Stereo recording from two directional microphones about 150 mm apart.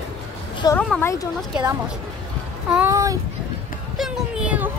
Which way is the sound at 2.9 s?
20° right (ahead or behind).